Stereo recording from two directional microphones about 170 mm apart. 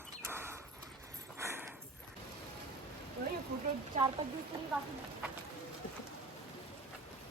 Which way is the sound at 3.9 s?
45° right (ahead or behind).